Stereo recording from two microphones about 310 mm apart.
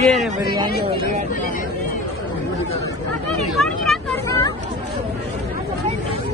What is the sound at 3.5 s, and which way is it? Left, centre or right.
Vehicle, centre.